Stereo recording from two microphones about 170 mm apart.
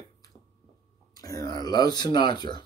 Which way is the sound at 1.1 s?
20° left (ahead or behind).